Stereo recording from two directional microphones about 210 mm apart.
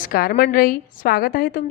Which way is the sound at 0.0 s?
45° left (ahead or behind).